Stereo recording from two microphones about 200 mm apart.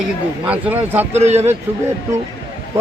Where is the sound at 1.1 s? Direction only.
35° right (ahead or behind).